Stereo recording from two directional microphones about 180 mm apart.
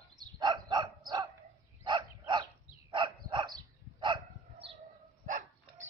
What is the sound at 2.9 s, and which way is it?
Dog, 25° right (ahead or behind).